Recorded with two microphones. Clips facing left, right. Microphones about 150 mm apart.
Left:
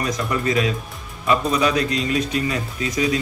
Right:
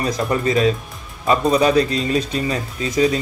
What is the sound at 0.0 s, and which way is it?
Speech, 30° right (ahead or behind).